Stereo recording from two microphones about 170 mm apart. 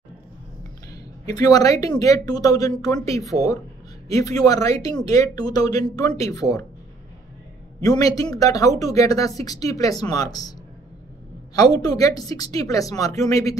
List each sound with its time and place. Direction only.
1.2 s speech: 20° left (ahead or behind)
7.8 s speech: 20° left (ahead or behind)
11.5 s speech: 20° left (ahead or behind)